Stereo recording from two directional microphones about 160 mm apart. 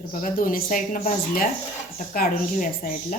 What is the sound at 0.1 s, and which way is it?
Speech, 55° left (ahead or behind).